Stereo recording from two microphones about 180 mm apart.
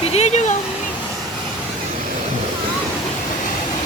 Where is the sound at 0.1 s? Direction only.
35° left (ahead or behind).